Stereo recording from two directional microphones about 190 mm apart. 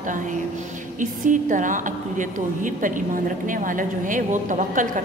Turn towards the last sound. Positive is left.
turn(degrees=-40)  # may be behind; listen again after turning